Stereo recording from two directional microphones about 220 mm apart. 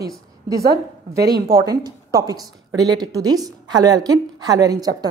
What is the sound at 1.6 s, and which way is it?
A woman's voice, 15° right (ahead or behind).